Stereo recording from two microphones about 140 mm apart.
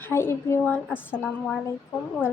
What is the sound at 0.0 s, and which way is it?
Speech, 15° left (ahead or behind).